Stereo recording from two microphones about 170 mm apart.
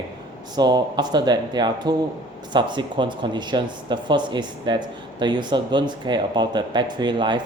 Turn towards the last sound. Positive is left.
turn(degrees=-25)  # may be behind; listen again after turning